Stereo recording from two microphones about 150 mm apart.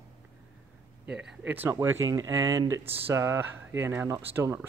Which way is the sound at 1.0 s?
5° right (ahead or behind).